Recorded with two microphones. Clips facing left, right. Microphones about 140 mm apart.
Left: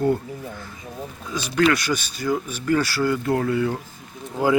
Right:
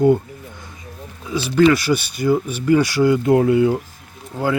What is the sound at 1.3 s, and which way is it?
Speech, 5° right (ahead or behind).